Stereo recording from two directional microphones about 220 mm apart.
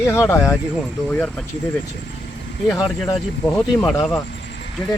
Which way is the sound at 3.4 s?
5° left (ahead or behind).